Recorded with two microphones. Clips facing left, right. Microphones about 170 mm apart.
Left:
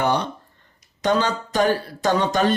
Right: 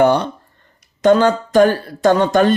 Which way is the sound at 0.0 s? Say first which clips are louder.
Right 8 dB; 50° right (ahead or behind).